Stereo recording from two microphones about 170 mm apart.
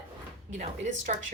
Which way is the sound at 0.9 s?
45° right (ahead or behind).